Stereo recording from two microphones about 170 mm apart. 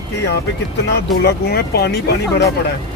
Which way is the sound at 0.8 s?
75° left (ahead or behind).